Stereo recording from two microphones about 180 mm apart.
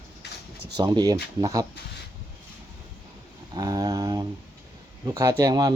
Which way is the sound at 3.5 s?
20° right (ahead or behind).